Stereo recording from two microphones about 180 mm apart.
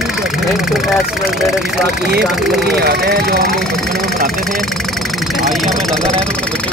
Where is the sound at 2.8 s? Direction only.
60° right (ahead or behind).